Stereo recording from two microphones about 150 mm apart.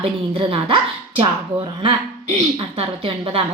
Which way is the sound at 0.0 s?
40° right (ahead or behind).